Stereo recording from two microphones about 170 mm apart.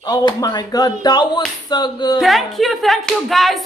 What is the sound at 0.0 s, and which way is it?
Speech, 25° left (ahead or behind).